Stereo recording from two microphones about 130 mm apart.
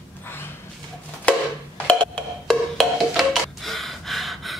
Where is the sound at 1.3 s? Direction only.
10° left (ahead or behind).